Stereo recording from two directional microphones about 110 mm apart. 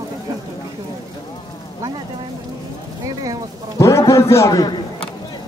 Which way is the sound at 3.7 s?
25° left (ahead or behind).